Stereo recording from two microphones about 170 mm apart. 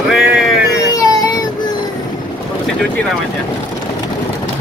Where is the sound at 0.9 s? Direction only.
20° left (ahead or behind).